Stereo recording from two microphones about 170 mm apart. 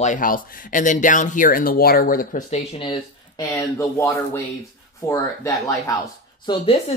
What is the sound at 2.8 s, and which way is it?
Speech, 25° left (ahead or behind).